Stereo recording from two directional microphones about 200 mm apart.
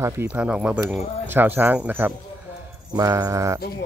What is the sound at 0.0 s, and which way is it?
Speech, 10° right (ahead or behind).